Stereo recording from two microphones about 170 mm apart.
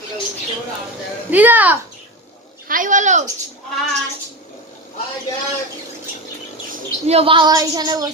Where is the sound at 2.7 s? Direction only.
50° right (ahead or behind).